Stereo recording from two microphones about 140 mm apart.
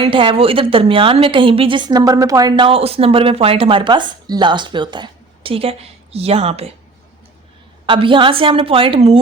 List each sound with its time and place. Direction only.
0.0 s a woman's voice: 40° right (ahead or behind)
7.9 s a woman's voice: 35° right (ahead or behind)